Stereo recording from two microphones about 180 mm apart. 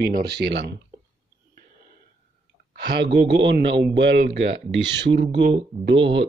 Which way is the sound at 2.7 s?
75° right (ahead or behind).